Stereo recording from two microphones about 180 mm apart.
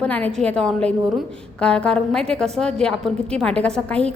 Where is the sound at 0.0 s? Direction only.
5° left (ahead or behind).